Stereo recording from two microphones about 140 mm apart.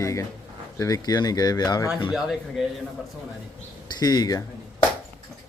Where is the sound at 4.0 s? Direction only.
30° left (ahead or behind).